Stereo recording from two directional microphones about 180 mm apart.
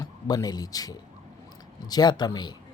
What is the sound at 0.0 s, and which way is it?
A man's voice, 20° left (ahead or behind).